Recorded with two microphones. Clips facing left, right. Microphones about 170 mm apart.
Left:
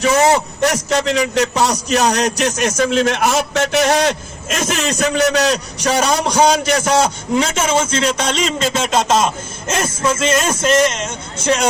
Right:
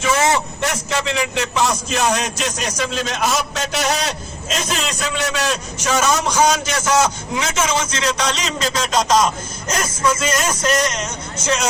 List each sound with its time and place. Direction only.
0.0 s a man's voice: 40° left (ahead or behind)
2.9 s a man's voice: 60° left (ahead or behind); by 11.7 s 30° left (ahead or behind)